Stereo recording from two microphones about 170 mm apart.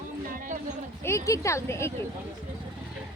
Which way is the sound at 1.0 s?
15° left (ahead or behind).